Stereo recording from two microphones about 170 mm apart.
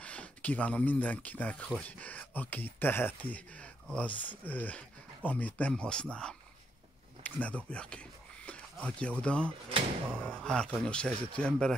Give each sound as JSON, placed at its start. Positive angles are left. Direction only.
{"t": 0.0, "sound": "a man's voice", "side_deg": 5}